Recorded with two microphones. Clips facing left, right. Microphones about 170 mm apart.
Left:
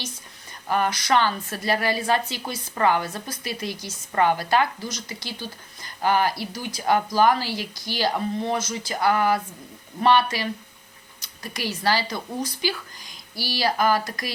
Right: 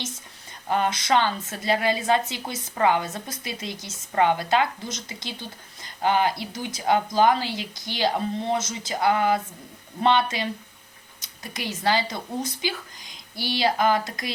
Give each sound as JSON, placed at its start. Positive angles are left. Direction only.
{"t": 0.7, "sound": "a woman's voice", "side_deg": -25}